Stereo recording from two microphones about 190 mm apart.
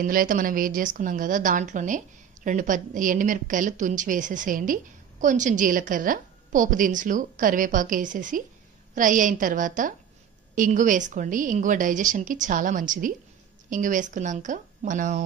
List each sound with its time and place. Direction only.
0.0 s a woman's voice: 45° right (ahead or behind)